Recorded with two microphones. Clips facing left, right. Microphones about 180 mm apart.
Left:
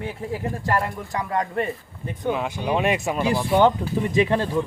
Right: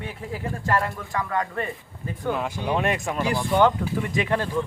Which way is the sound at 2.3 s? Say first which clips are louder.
Left 2 dB; 5° left (ahead or behind).